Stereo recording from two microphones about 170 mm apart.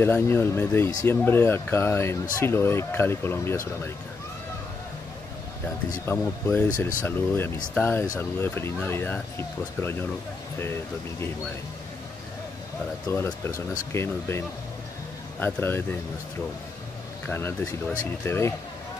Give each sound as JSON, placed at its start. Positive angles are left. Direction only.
{"t": 0.0, "sound": "speech", "side_deg": 15}
{"t": 5.9, "sound": "speech", "side_deg": 15}
{"t": 13.1, "sound": "speech", "side_deg": 15}
{"t": 15.4, "sound": "speech", "side_deg": 15}
{"t": 17.3, "sound": "speech", "side_deg": 15}